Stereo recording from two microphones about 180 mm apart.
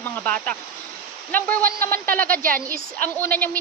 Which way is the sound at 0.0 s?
10° left (ahead or behind).